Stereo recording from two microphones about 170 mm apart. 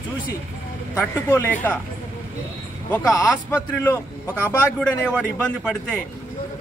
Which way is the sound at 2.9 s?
20° left (ahead or behind).